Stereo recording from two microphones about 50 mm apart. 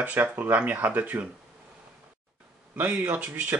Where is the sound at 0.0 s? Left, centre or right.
Right.